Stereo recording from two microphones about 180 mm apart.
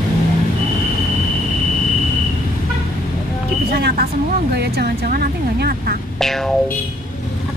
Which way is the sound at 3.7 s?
60° right (ahead or behind).